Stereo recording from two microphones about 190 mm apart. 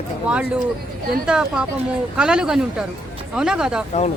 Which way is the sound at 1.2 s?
5° right (ahead or behind).